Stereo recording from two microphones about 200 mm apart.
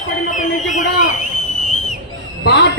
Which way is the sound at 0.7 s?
40° left (ahead or behind).